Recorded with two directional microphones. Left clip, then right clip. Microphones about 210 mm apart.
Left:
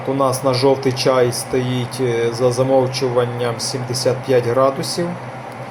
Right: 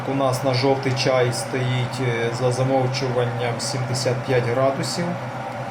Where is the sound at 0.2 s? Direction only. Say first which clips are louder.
Left 5 dB; 25° left (ahead or behind).